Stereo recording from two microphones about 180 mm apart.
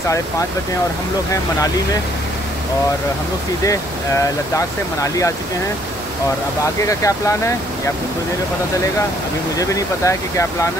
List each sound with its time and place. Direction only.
3.6 s speech: 20° left (ahead or behind)
6.8 s speech: 15° left (ahead or behind)
9.6 s speech: 20° left (ahead or behind)